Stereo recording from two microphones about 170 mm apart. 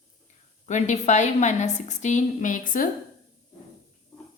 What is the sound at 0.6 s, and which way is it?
A woman's voice, 45° left (ahead or behind).